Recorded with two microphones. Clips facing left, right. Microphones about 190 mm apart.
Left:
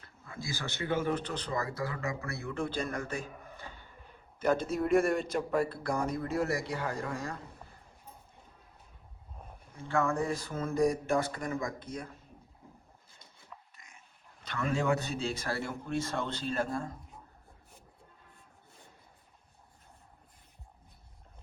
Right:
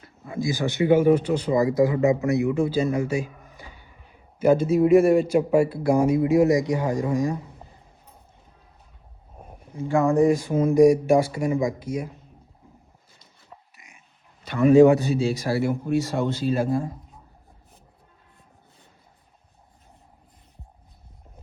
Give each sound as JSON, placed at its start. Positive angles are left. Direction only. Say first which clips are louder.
{"t": 0.0, "sound": "speech", "louder": "right 15 dB", "side_deg": -15}
{"t": 2.6, "sound": "speech", "louder": "right 12 dB", "side_deg": -5}
{"t": 9.4, "sound": "a sound", "louder": "right 6 dB", "side_deg": -55}
{"t": 9.8, "sound": "speech", "louder": "right 12 dB", "side_deg": -15}
{"t": 13.7, "sound": "dog", "louder": "right 4 dB", "side_deg": -10}
{"t": 14.4, "sound": "speech", "louder": "right 17 dB", "side_deg": -15}